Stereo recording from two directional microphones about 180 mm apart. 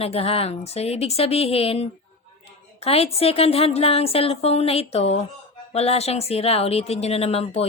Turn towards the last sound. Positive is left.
turn(degrees=35)  # may be behind; listen again after turning